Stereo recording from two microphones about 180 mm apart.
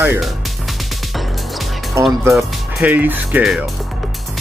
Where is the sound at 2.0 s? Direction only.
15° right (ahead or behind).